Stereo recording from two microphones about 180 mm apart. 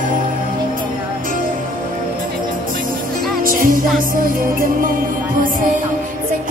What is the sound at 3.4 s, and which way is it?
Music, 50° right (ahead or behind).